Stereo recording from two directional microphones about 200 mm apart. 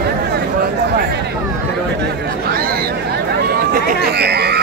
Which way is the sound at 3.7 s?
50° right (ahead or behind).